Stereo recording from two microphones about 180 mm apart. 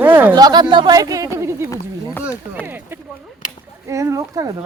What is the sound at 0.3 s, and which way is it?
Speech, 20° right (ahead or behind).